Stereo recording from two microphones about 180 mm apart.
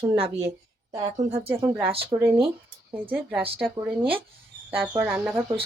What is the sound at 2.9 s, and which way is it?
Speech, 10° right (ahead or behind).